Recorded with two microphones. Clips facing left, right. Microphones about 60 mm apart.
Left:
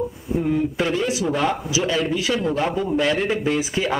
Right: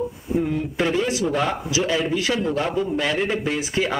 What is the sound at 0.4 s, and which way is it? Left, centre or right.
Speech, centre.